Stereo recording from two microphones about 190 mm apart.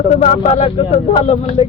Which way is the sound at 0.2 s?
35° left (ahead or behind).